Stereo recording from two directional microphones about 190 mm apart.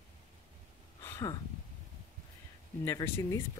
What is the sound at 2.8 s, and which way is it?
Speech, 15° left (ahead or behind).